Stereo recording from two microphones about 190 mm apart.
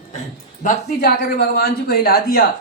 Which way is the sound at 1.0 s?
60° left (ahead or behind).